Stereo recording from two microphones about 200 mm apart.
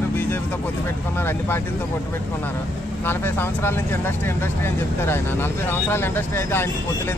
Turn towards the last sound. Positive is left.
turn(degrees=10)  # may be behind; listen again after turning